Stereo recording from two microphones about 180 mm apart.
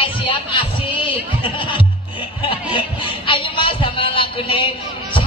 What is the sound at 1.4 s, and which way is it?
Speech, 30° left (ahead or behind).